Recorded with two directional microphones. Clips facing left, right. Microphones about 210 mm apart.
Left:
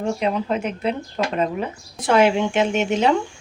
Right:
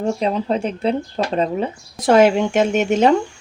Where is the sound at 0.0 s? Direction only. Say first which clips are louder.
Right 2 dB; 35° right (ahead or behind).